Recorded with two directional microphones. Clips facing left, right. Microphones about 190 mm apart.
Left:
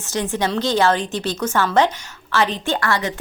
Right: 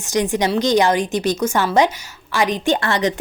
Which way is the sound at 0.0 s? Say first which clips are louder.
Right 4 dB; 15° right (ahead or behind).